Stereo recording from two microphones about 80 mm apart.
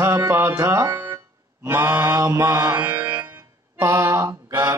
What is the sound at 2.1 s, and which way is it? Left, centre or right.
Mantra, right.